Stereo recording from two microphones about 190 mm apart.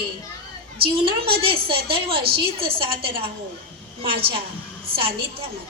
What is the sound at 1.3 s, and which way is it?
A woman's voice, 30° right (ahead or behind).